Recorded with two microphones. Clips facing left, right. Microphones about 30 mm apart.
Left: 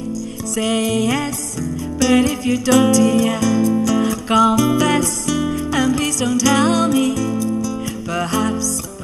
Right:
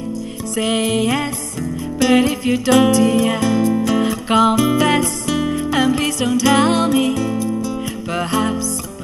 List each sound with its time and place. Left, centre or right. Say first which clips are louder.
0.6 s music: right 1 dB; right